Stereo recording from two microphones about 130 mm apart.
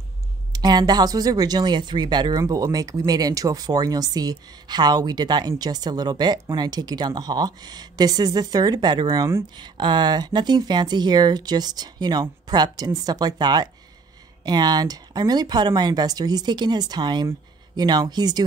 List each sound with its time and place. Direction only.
0.5 s speech: 30° right (ahead or behind)
9.6 s speech: 35° right (ahead or behind)